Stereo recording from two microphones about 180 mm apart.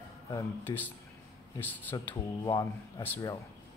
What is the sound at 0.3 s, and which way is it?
Speech, 15° left (ahead or behind).